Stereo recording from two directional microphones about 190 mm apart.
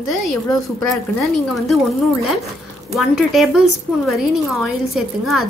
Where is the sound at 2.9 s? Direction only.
Centre (ahead or behind).